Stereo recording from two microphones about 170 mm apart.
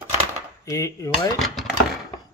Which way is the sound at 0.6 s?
15° left (ahead or behind).